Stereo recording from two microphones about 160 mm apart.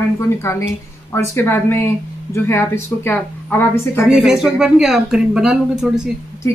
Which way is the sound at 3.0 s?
15° left (ahead or behind).